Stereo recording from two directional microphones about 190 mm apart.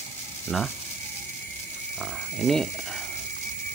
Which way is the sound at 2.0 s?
Centre (ahead or behind).